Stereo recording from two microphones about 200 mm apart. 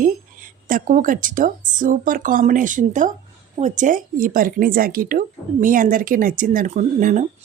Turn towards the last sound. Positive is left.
turn(degrees=-40)  # may be behind; listen again after turning